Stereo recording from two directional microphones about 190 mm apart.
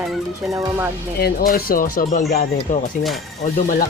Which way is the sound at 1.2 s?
55° left (ahead or behind).